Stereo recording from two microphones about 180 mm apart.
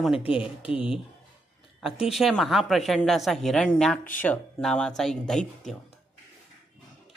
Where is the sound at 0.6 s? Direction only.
30° left (ahead or behind).